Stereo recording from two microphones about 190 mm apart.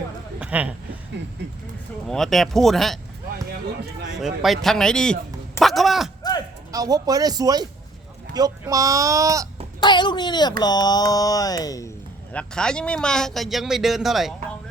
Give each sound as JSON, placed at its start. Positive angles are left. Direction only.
{"t": 0.3, "sound": "a sound", "side_deg": -5}
{"t": 1.2, "sound": "speech", "side_deg": -65}
{"t": 2.0, "sound": "a man's voice", "side_deg": 0}
{"t": 4.2, "sound": "a man's voice", "side_deg": 0}
{"t": 6.7, "sound": "speech", "side_deg": -20}
{"t": 9.8, "sound": "speech", "side_deg": 25}
{"t": 12.3, "sound": "a man's voice", "side_deg": 5}